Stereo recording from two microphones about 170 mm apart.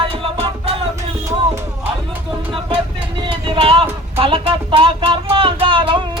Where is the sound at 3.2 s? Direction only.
30° right (ahead or behind).